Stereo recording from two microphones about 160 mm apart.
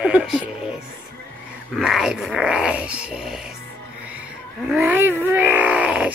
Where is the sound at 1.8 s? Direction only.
Centre (ahead or behind).